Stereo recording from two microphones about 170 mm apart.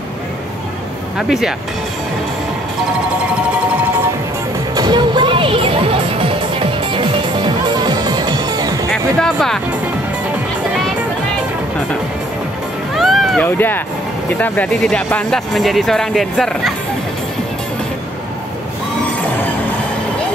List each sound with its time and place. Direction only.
1.1 s speech: 5° right (ahead or behind)
4.7 s music: 25° right (ahead or behind)
9.2 s speech: 5° left (ahead or behind)
12.9 s run: centre (ahead or behind)
13.6 s speech: 10° left (ahead or behind)